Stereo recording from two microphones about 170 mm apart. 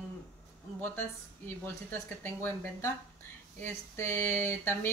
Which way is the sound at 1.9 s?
15° left (ahead or behind).